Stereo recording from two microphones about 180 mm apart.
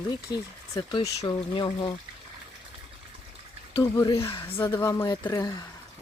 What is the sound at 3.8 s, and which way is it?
Speech, 20° left (ahead or behind).